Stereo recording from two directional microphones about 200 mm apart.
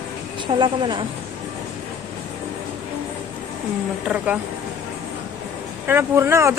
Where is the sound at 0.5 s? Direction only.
25° right (ahead or behind).